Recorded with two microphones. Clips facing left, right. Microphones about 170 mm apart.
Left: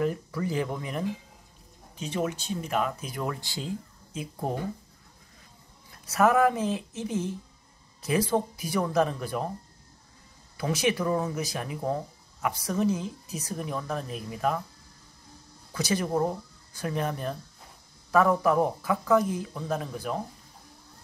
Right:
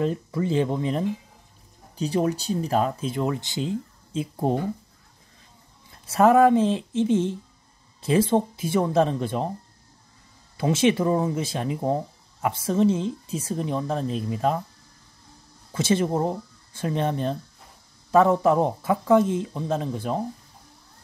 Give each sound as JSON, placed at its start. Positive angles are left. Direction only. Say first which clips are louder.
{"t": 0.0, "sound": "speech", "louder": "right 3 dB", "side_deg": -25}
{"t": 5.9, "sound": "speech", "louder": "right 5 dB", "side_deg": -30}
{"t": 10.6, "sound": "speech", "louder": "right 6 dB", "side_deg": -25}
{"t": 15.7, "sound": "speech", "louder": "right 5 dB", "side_deg": -25}